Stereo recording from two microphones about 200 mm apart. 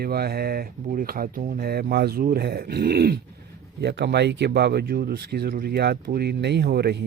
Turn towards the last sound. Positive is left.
turn(degrees=-55)  # may be behind; listen again after turning